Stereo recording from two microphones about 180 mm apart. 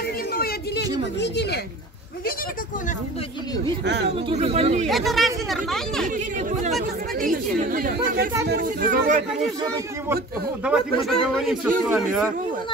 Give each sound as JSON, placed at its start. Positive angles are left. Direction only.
{"t": 0.3, "sound": "a sound", "side_deg": 60}
{"t": 1.2, "sound": "a woman's voice", "side_deg": 70}
{"t": 3.8, "sound": "a woman's voice", "side_deg": -70}
{"t": 4.3, "sound": "speech", "side_deg": -35}
{"t": 4.8, "sound": "speech", "side_deg": 0}
{"t": 7.2, "sound": "speech", "side_deg": -50}
{"t": 10.6, "sound": "speech", "side_deg": -5}